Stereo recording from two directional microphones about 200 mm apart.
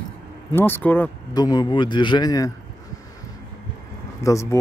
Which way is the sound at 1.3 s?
20° left (ahead or behind).